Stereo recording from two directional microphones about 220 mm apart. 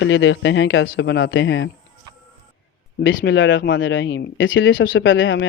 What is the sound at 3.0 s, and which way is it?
Speech, 55° left (ahead or behind).